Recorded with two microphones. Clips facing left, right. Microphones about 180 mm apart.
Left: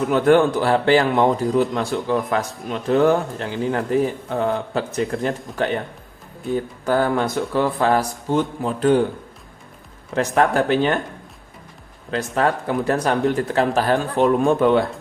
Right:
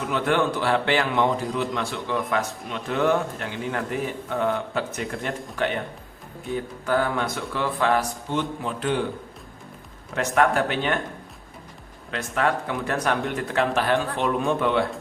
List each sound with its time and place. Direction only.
0.1 s a man's voice: 45° left (ahead or behind)
10.2 s a man's voice: 35° left (ahead or behind)
12.1 s a man's voice: 35° left (ahead or behind)